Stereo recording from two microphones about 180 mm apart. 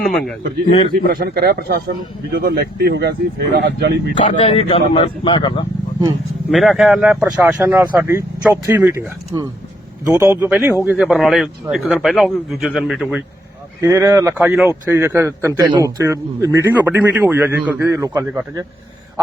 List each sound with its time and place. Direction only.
0.0 s speech: 5° left (ahead or behind)
1.0 s speech: 60° right (ahead or behind)
4.4 s speech: 30° left (ahead or behind)
6.5 s speech: centre (ahead or behind)
13.8 s speech: 15° right (ahead or behind)